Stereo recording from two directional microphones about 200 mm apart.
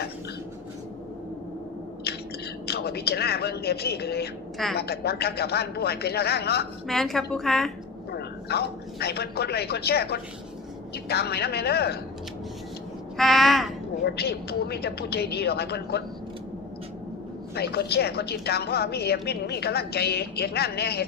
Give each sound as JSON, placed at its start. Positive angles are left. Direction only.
{"t": 2.1, "sound": "a sound", "side_deg": 50}
{"t": 2.6, "sound": "a woman's voice", "side_deg": 55}
{"t": 6.8, "sound": "a woman's voice", "side_deg": 0}
{"t": 8.1, "sound": "a woman's voice", "side_deg": 55}
{"t": 13.1, "sound": "a sound", "side_deg": 0}
{"t": 14.0, "sound": "a woman's voice", "side_deg": 55}
{"t": 17.5, "sound": "a woman's voice", "side_deg": 55}